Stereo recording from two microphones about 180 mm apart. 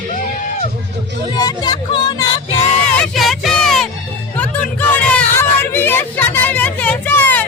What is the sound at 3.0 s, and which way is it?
Music, centre (ahead or behind).